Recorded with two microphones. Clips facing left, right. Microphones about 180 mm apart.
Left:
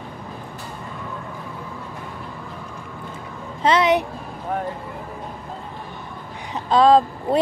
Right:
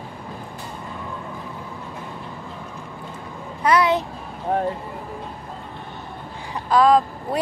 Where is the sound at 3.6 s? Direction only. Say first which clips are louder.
Left 1 dB; 20° left (ahead or behind).